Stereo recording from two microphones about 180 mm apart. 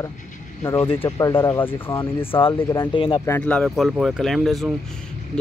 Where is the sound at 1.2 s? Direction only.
20° left (ahead or behind).